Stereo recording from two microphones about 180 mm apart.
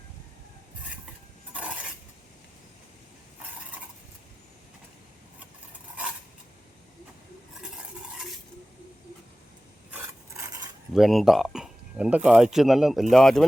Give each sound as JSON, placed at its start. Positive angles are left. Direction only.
{"t": 9.9, "sound": "filing", "side_deg": -15}
{"t": 10.9, "sound": "speech", "side_deg": 0}